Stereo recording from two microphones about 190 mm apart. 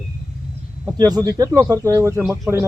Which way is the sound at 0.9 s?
20° right (ahead or behind).